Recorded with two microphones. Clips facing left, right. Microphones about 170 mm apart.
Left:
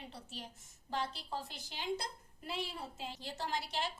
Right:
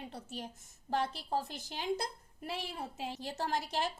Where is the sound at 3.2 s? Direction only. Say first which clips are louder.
Right 4 dB; 50° right (ahead or behind).